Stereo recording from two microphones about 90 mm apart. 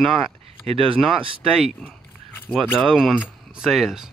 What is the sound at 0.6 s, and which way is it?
Speech, 90° right.